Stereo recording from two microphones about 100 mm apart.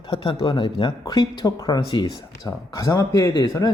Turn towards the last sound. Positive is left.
turn(degrees=35)  # may be behind; listen again after turning